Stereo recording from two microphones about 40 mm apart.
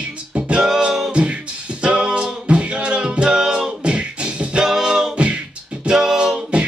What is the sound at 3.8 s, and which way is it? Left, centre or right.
Music, right.